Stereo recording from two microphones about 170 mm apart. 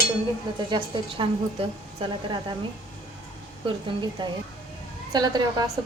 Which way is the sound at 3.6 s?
30° right (ahead or behind).